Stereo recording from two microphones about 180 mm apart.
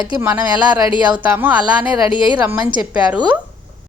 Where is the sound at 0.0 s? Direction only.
15° right (ahead or behind).